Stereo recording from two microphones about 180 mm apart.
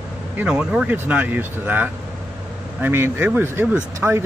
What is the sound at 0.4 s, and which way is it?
Speech, 5° right (ahead or behind).